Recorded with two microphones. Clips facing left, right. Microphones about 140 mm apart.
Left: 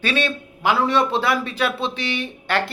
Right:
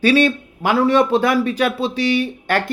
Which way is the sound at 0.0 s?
45° right (ahead or behind).